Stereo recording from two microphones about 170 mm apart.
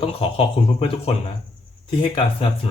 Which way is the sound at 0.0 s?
35° left (ahead or behind).